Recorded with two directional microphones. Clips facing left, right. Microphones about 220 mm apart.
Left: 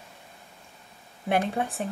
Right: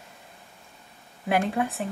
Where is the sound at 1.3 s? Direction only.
Centre (ahead or behind).